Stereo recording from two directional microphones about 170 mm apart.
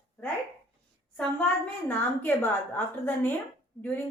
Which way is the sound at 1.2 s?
10° left (ahead or behind).